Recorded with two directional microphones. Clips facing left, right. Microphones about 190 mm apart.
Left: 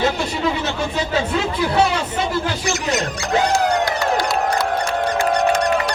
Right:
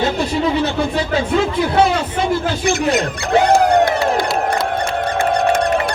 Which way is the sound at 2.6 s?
55° right (ahead or behind).